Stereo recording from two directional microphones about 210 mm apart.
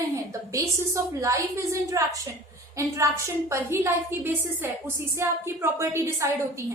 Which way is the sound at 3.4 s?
15° right (ahead or behind).